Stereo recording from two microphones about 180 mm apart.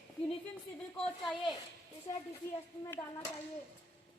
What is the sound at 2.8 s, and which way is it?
Speech, 15° left (ahead or behind).